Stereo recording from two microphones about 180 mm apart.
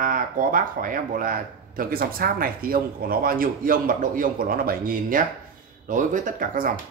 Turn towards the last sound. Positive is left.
turn(degrees=-50)  # may be behind; listen again after turning